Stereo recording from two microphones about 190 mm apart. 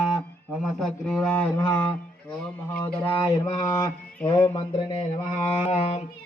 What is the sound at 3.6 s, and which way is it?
Mantra, 20° left (ahead or behind).